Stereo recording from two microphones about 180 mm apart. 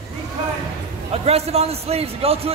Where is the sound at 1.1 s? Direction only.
35° right (ahead or behind).